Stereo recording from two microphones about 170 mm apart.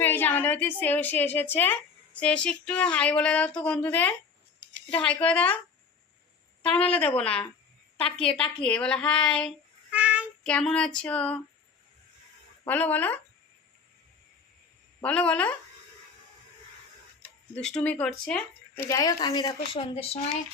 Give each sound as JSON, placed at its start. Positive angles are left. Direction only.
{"t": 0.0, "sound": "a woman's voice", "side_deg": 10}
{"t": 6.6, "sound": "a woman's voice", "side_deg": 5}
{"t": 8.4, "sound": "speech", "side_deg": 5}
{"t": 9.9, "sound": "child singing", "side_deg": -5}
{"t": 10.4, "sound": "speech", "side_deg": 5}
{"t": 12.6, "sound": "a woman's voice", "side_deg": 10}
{"t": 15.0, "sound": "a woman's voice", "side_deg": 5}
{"t": 17.5, "sound": "a woman's voice", "side_deg": 5}
{"t": 18.9, "sound": "speech", "side_deg": 20}